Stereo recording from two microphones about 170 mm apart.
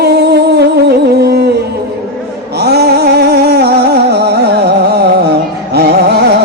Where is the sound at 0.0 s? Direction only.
70° right (ahead or behind).